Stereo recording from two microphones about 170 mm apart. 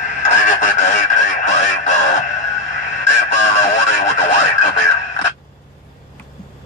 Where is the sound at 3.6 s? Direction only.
45° left (ahead or behind).